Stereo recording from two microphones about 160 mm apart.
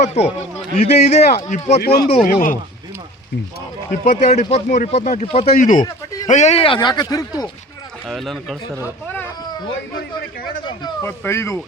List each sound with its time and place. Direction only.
0.0 s a man's voice: 45° left (ahead or behind)
1.8 s speech: 75° left (ahead or behind)
2.2 s speech: 65° left (ahead or behind)
4.0 s speech: 50° left (ahead or behind)
5.5 s speech: 55° left (ahead or behind); by 7.4 s 25° left (ahead or behind)
8.1 s speech: centre (ahead or behind)
11.0 s speech: 15° left (ahead or behind)